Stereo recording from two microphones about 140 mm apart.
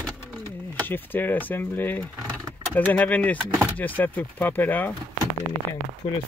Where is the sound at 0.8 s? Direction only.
15° left (ahead or behind).